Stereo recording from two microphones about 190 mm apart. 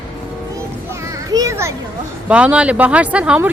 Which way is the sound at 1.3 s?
15° right (ahead or behind).